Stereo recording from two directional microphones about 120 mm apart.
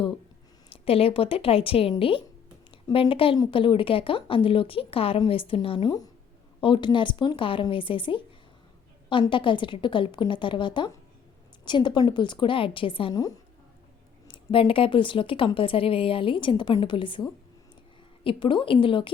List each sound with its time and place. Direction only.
0.7 s a woman's voice: 55° left (ahead or behind)
9.3 s a woman's voice: 45° left (ahead or behind)
14.3 s a woman's voice: 50° left (ahead or behind)